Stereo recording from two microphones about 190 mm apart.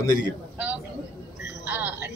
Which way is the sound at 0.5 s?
10° right (ahead or behind).